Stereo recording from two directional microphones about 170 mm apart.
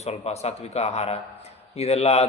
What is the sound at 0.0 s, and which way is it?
A man's voice, 40° left (ahead or behind).